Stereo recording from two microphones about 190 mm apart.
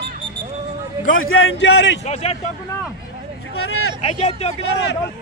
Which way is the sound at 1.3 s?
90° left.